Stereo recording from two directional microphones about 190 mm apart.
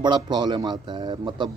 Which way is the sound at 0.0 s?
25° right (ahead or behind).